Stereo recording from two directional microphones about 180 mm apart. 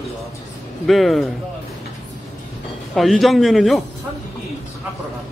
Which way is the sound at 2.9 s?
Centre (ahead or behind).